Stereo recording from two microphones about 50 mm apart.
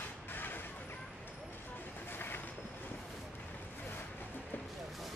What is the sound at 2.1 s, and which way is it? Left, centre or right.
Vehicle, left.